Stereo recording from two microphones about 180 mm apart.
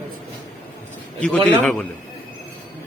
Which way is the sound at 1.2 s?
5° left (ahead or behind).